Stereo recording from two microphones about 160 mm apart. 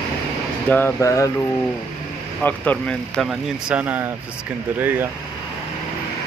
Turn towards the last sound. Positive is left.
turn(degrees=-10)  # may be behind; listen again after turning